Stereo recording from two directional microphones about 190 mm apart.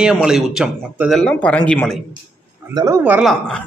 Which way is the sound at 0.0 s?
5° right (ahead or behind).